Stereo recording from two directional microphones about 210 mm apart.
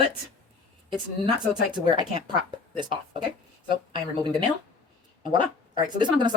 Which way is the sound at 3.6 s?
20° right (ahead or behind).